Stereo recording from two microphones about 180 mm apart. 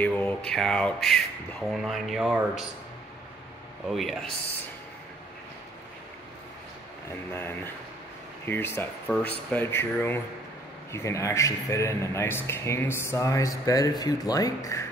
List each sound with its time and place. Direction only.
0.0 s speech: 10° left (ahead or behind)
3.9 s speech: centre (ahead or behind)
8.5 s speech: 10° left (ahead or behind)